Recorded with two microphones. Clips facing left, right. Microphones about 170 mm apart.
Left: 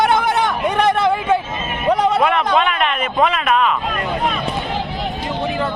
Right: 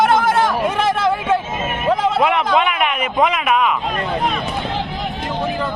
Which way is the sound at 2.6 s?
10° right (ahead or behind).